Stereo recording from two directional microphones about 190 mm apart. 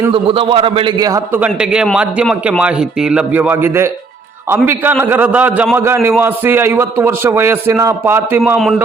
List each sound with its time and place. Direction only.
0.1 s a man's voice: 25° right (ahead or behind)
1.4 s a man's voice: 5° right (ahead or behind)